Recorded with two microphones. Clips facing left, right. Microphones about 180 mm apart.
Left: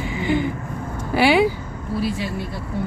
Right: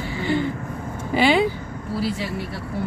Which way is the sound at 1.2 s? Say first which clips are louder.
Left 2 dB; 10° left (ahead or behind).